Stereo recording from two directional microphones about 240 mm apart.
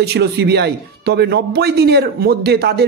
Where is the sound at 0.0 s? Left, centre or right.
Right.